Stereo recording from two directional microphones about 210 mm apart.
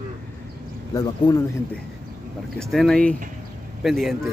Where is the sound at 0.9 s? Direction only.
20° left (ahead or behind).